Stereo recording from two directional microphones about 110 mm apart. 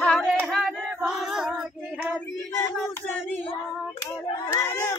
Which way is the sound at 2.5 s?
20° left (ahead or behind).